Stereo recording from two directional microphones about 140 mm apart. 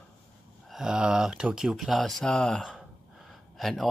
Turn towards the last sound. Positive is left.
turn(degrees=0)  # may be behind; listen again after turning